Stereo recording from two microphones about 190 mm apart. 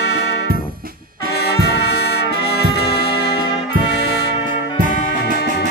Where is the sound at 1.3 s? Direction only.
60° left (ahead or behind).